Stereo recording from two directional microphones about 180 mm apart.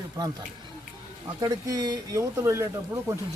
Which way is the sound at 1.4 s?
20° right (ahead or behind).